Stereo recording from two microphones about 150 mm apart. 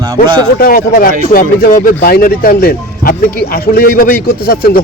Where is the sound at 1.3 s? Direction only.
65° left (ahead or behind); by 4.8 s 80° left.